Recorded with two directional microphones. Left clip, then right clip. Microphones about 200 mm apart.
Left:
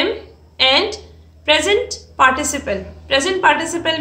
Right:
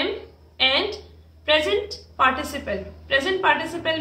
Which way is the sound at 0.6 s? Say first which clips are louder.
Left 6 dB; 45° left (ahead or behind).